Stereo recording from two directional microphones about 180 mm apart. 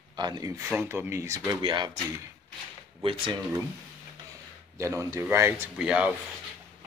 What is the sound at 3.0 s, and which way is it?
Speech, 25° right (ahead or behind).